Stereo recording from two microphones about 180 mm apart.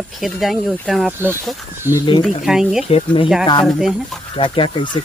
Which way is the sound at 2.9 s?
35° left (ahead or behind).